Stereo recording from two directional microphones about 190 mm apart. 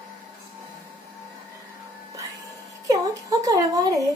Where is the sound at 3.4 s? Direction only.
20° right (ahead or behind).